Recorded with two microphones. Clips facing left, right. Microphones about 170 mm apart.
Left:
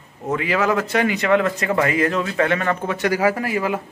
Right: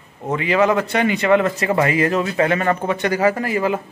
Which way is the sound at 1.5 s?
15° right (ahead or behind).